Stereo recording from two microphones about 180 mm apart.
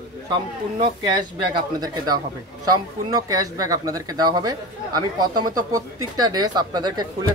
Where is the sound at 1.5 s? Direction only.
25° right (ahead or behind).